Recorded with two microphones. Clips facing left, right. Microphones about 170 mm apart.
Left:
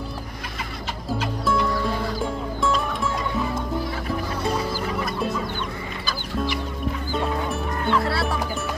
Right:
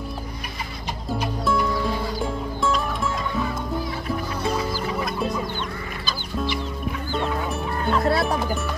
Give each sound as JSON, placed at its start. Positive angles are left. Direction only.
{"t": 2.2, "sound": "music", "side_deg": 0}
{"t": 7.1, "sound": "chicken", "side_deg": 10}
{"t": 7.8, "sound": "music", "side_deg": -40}